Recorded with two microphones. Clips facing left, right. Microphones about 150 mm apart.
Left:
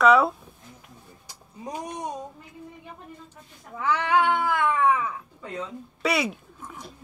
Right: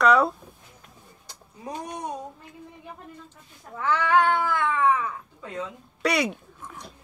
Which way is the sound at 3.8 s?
10° left (ahead or behind).